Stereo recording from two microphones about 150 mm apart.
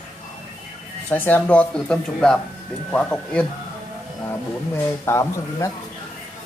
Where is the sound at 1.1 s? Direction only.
10° left (ahead or behind).